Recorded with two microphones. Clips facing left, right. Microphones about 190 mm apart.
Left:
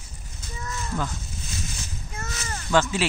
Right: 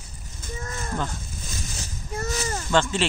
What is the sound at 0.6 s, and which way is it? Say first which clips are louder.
Livestock: even; 50° right (ahead or behind).